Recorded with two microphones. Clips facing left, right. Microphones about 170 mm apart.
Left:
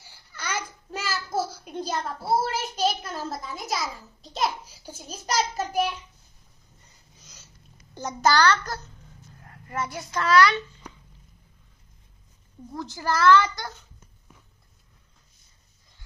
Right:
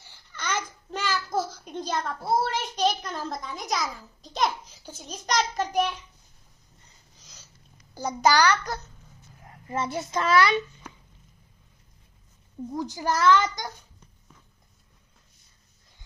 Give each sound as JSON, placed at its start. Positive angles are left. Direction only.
{"t": 0.1, "sound": "a sound", "side_deg": 10}
{"t": 2.4, "sound": "a child's voice", "side_deg": 5}
{"t": 7.9, "sound": "a child's voice", "side_deg": -10}
{"t": 12.7, "sound": "a child's voice", "side_deg": -15}